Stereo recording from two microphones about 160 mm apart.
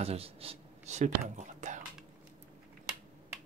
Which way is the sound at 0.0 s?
40° right (ahead or behind).